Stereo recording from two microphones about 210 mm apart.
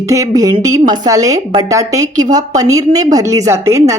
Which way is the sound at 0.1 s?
15° right (ahead or behind).